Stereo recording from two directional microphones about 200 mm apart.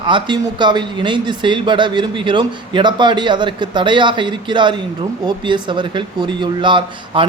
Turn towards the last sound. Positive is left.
turn(degrees=-25)  # may be behind; listen again after turning